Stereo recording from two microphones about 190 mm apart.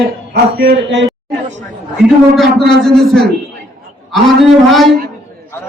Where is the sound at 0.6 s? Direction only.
70° right (ahead or behind).